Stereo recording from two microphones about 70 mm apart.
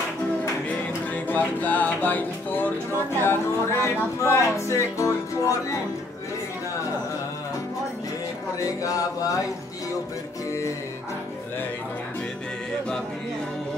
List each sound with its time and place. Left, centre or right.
0.7 s music: left
3.2 s speech: left
8.6 s speech: left